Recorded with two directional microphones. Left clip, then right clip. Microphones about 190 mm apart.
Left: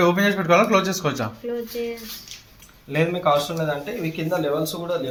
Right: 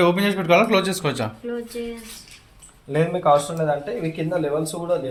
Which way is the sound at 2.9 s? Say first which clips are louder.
Right 2 dB; 35° right (ahead or behind).